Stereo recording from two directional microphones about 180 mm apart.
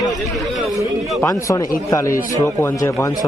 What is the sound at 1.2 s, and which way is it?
Speech, 15° left (ahead or behind).